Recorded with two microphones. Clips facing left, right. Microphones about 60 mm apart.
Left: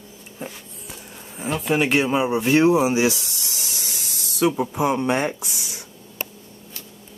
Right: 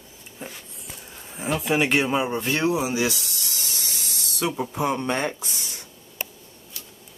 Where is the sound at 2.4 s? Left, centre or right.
Centre.